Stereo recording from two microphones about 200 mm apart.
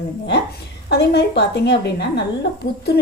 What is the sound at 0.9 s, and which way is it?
A woman's voice, 55° left (ahead or behind).